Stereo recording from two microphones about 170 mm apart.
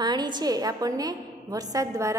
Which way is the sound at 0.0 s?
25° right (ahead or behind).